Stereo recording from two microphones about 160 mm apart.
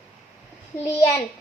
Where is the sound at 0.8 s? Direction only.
15° left (ahead or behind).